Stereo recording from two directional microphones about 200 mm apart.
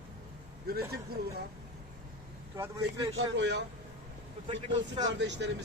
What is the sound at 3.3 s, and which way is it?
Speech, 60° right (ahead or behind).